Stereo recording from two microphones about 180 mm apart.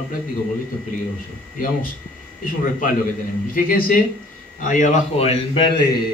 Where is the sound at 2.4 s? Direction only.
50° left (ahead or behind).